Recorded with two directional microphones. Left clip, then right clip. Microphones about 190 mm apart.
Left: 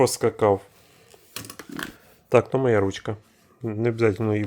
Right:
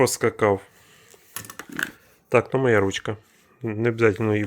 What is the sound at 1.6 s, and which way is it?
Speech, 5° left (ahead or behind).